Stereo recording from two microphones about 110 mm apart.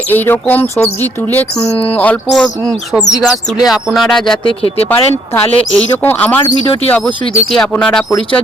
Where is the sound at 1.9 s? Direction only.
15° left (ahead or behind).